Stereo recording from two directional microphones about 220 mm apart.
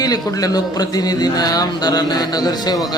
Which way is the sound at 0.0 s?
15° left (ahead or behind).